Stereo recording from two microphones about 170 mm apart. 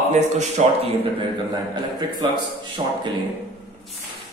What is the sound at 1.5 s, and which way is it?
Speech, 25° right (ahead or behind).